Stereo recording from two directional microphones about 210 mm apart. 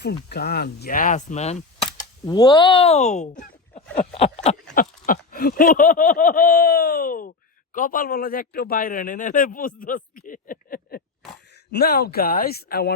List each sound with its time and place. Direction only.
0.0 s arrow: 50° left (ahead or behind); by 1.9 s 30° left (ahead or behind)
2.2 s speech: 20° left (ahead or behind)
3.9 s a sound: 30° left (ahead or behind)
4.7 s a sound: 40° left (ahead or behind)
9.8 s speech: 40° left (ahead or behind)
11.7 s arrow: 50° left (ahead or behind)